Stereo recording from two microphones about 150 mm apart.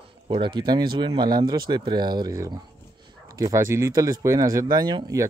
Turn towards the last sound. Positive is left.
turn(degrees=-25)  # may be behind; listen again after turning